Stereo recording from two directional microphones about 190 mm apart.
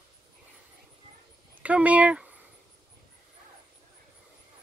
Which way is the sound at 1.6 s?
5° right (ahead or behind).